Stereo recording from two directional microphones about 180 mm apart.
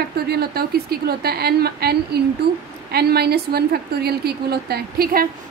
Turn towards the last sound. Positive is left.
turn(degrees=-55)  # may be behind; listen again after turning